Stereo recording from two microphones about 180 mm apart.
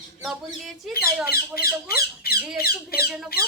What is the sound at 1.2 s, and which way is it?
Speech, 60° left (ahead or behind).